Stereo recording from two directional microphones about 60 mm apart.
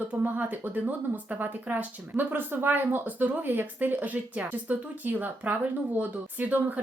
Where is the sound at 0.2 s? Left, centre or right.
Right.